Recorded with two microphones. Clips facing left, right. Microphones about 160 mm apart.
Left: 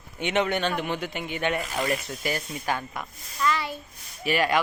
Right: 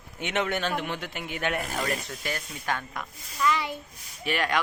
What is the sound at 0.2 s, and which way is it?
A man's voice, centre (ahead or behind).